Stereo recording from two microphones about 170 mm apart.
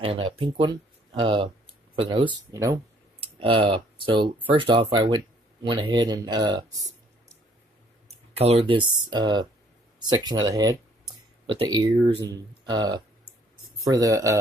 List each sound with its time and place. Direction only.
0.0 s speech: 30° right (ahead or behind)
3.2 s speech: 30° right (ahead or behind)
8.4 s speech: 35° right (ahead or behind); by 14.4 s 20° right (ahead or behind)